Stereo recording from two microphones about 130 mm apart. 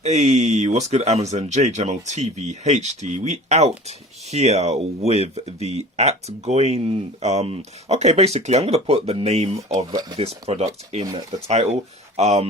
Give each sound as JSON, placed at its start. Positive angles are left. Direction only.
{"t": 0.0, "sound": "speech", "side_deg": -60}
{"t": 9.9, "sound": "speech", "side_deg": -30}
{"t": 10.5, "sound": "speech", "side_deg": -55}